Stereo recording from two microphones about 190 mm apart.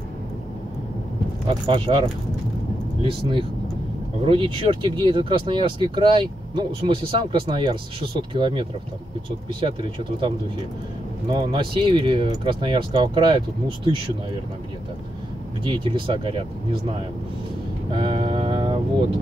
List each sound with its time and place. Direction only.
1.5 s speech: 25° right (ahead or behind)
15.6 s speech: 25° right (ahead or behind)
17.9 s music: 25° right (ahead or behind)